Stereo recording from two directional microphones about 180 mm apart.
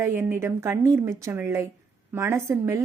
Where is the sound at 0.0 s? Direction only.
10° right (ahead or behind).